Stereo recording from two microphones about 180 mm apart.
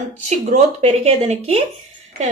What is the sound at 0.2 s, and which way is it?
Speech, 40° right (ahead or behind).